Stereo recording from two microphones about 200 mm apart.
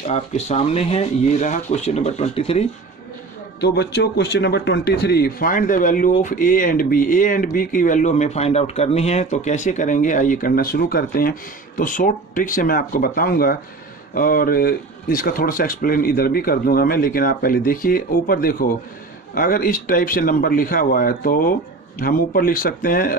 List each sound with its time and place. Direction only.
0.0 s speech: 35° left (ahead or behind)
3.6 s speech: 55° left (ahead or behind)